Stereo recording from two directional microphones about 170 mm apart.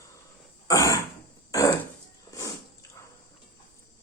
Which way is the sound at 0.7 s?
20° left (ahead or behind).